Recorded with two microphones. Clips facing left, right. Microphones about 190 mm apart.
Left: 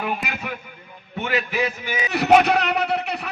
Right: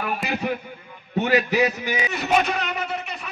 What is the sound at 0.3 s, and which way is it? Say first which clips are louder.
A man's voice: right 6 dB; 35° right (ahead or behind).